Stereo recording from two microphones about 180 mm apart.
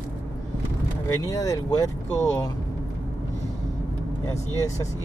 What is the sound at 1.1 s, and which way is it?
Speech, 20° left (ahead or behind).